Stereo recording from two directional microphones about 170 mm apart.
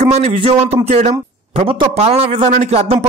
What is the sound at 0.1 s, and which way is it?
A man's voice, 35° right (ahead or behind).